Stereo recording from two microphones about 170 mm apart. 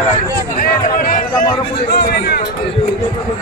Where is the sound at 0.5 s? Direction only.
55° left (ahead or behind).